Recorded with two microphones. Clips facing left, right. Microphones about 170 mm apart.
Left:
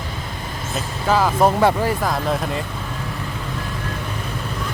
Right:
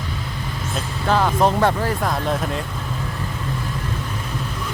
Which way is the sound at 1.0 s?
5° left (ahead or behind).